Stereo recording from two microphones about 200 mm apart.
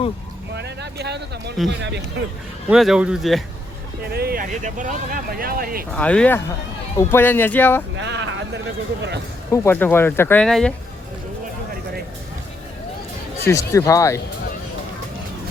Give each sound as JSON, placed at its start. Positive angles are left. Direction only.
{"t": 0.5, "sound": "speech", "side_deg": -55}
{"t": 2.6, "sound": "speech", "side_deg": 0}
{"t": 4.0, "sound": "speech", "side_deg": -50}
{"t": 5.9, "sound": "speech", "side_deg": 5}
{"t": 7.9, "sound": "speech", "side_deg": -65}
{"t": 9.5, "sound": "speech", "side_deg": 10}
{"t": 13.5, "sound": "speech", "side_deg": 15}